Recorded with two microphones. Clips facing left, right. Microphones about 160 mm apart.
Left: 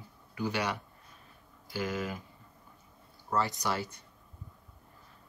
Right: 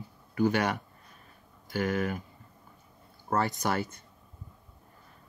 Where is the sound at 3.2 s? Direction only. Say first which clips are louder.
Right 3 dB; 50° right (ahead or behind).